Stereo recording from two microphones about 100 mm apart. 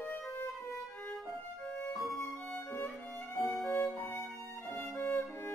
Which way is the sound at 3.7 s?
15° left (ahead or behind).